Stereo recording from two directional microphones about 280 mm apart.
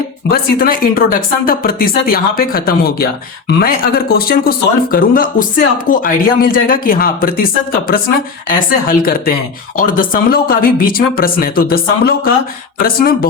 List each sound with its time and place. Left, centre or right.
0.3 s speech: left